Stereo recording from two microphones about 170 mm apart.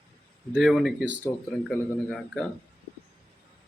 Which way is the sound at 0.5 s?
Centre (ahead or behind).